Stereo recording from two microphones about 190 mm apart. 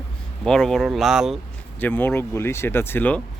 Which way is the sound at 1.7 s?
10° left (ahead or behind).